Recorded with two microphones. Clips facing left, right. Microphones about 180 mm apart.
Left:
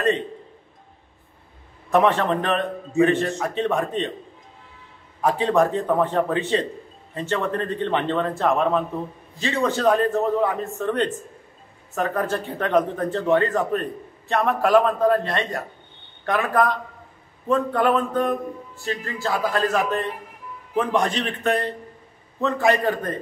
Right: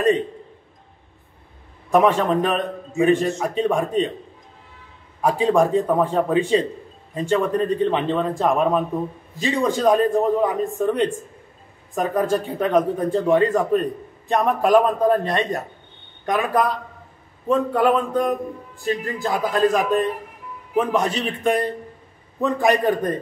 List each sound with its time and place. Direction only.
1.9 s speech: 10° right (ahead or behind)
5.2 s speech: 10° right (ahead or behind)